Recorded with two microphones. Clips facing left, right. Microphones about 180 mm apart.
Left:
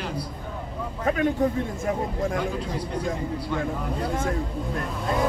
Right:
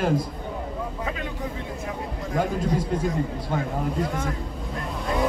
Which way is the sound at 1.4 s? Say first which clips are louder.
Left 9 dB; 50° left (ahead or behind).